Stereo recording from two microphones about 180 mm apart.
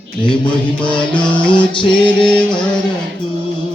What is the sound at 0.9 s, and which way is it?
Music, 25° left (ahead or behind).